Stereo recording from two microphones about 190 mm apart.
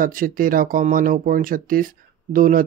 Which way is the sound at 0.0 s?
45° right (ahead or behind).